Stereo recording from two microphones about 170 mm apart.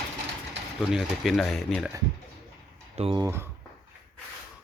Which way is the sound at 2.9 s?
35° right (ahead or behind).